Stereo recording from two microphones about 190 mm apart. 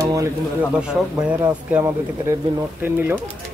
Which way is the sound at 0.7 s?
5° right (ahead or behind).